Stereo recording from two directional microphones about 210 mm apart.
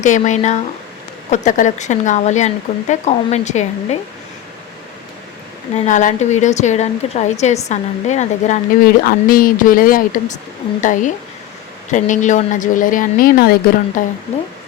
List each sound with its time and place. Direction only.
0.0 s a woman's voice: 35° left (ahead or behind)
5.7 s a woman's voice: 35° left (ahead or behind)